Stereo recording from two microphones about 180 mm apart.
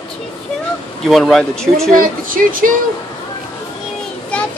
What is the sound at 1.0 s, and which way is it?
Speech, centre (ahead or behind).